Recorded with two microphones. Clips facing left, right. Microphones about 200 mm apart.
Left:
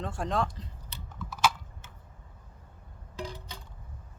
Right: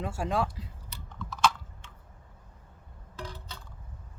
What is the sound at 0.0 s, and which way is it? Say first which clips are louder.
Speech: right 1 dB; 5° right (ahead or behind).